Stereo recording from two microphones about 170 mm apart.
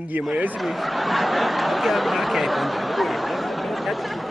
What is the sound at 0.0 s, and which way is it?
Speech, 5° right (ahead or behind).